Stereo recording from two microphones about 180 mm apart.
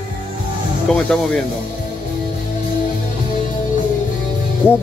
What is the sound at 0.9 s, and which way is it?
Speech, 5° left (ahead or behind).